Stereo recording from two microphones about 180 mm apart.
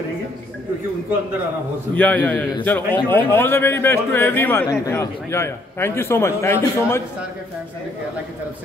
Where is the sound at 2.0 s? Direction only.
10° left (ahead or behind).